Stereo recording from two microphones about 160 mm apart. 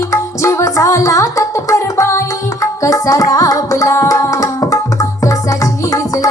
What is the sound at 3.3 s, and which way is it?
Tabla, 20° left (ahead or behind).